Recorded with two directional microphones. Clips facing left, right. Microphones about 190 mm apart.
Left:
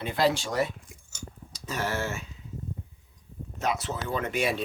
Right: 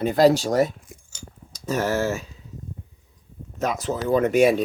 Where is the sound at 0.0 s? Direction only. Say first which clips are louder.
Right 9 dB; 40° right (ahead or behind).